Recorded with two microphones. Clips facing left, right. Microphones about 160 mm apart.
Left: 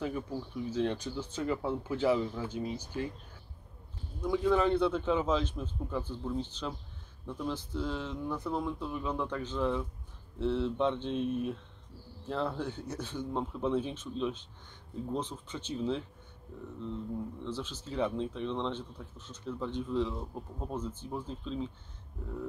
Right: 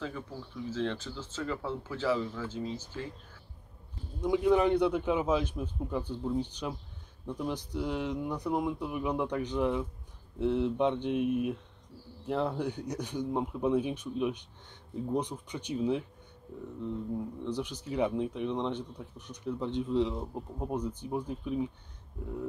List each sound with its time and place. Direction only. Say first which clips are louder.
0.7 s speech: left 1 dB; 15° left (ahead or behind)
4.2 s speech: right 2 dB; 15° right (ahead or behind)